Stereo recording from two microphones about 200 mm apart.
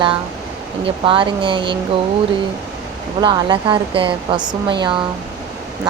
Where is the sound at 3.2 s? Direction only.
25° right (ahead or behind).